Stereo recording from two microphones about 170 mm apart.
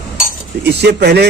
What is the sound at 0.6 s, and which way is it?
Speech, 75° right (ahead or behind).